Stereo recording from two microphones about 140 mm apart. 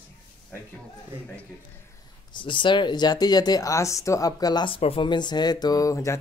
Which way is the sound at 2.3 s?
35° left (ahead or behind).